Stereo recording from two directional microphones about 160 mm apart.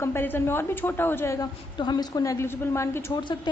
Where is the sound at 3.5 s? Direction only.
30° left (ahead or behind).